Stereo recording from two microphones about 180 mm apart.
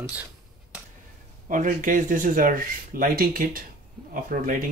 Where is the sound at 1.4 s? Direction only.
45° right (ahead or behind).